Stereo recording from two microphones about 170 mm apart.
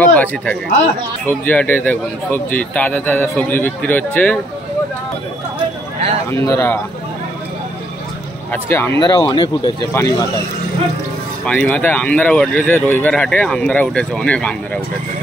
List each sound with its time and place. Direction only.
0.0 s speech: 10° left (ahead or behind)
6.3 s speech: 15° left (ahead or behind)
8.5 s speech: 15° left (ahead or behind)
11.4 s speech: 10° left (ahead or behind)